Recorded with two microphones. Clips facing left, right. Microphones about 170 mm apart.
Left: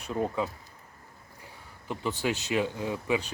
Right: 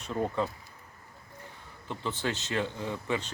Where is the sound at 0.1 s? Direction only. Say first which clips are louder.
Left 1 dB; 5° left (ahead or behind).